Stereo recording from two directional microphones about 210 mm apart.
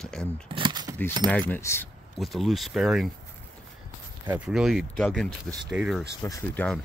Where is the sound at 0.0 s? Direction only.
5° left (ahead or behind).